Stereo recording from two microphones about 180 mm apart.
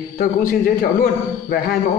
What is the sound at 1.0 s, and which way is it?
Speech, 55° left (ahead or behind).